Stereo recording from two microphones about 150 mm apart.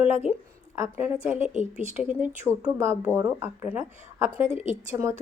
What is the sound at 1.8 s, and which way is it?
Speech, 55° right (ahead or behind).